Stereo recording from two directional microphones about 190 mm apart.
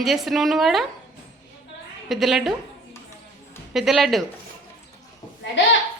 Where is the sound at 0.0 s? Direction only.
Centre (ahead or behind).